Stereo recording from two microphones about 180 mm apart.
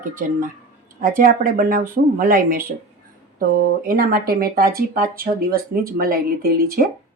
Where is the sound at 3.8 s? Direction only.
55° right (ahead or behind).